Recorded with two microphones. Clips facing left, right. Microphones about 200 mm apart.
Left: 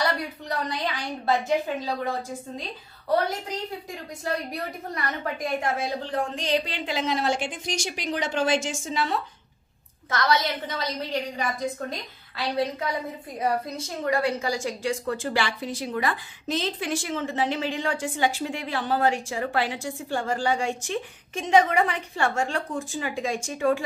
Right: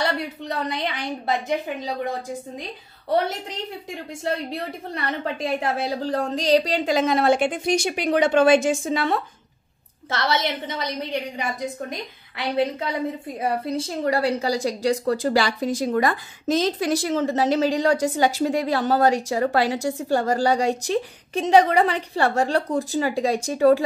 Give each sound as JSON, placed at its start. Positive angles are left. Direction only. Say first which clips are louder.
{"t": 0.0, "sound": "a sound", "louder": "right 2 dB", "side_deg": -25}
{"t": 4.2, "sound": "a woman's voice", "louder": "right 3 dB", "side_deg": -25}
{"t": 10.0, "sound": "a woman's voice", "louder": "right 1 dB", "side_deg": -25}